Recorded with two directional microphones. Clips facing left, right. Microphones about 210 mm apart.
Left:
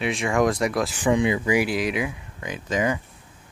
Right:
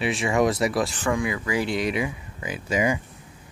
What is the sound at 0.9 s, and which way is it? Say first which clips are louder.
Speech: left 4 dB; 20° left (ahead or behind).